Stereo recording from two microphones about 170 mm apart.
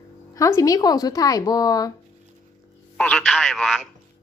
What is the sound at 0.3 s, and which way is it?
A woman's voice, 20° left (ahead or behind).